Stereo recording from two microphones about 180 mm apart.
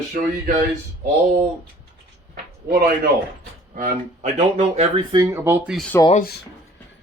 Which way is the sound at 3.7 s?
45° right (ahead or behind).